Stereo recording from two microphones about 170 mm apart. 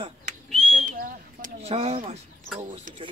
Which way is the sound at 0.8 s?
55° right (ahead or behind).